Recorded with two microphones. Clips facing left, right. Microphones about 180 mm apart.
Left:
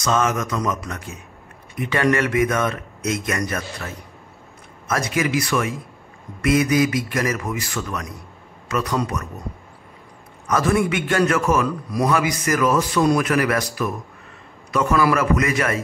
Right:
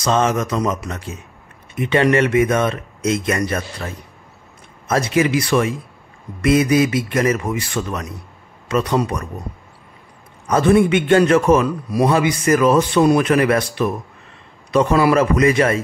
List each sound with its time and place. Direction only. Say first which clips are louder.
0.0 s a man's voice: right 3 dB; 30° right (ahead or behind)
10.4 s a man's voice: right 6 dB; 25° right (ahead or behind)